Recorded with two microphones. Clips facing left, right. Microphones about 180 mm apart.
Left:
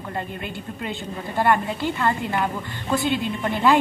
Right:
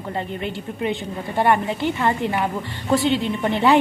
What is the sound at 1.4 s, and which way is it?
Speech, 20° right (ahead or behind).